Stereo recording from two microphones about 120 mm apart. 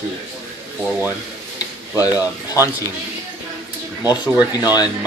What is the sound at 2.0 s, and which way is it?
Speech, 30° left (ahead or behind).